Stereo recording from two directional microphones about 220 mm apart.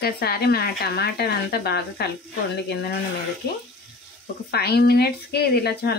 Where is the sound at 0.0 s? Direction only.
45° left (ahead or behind).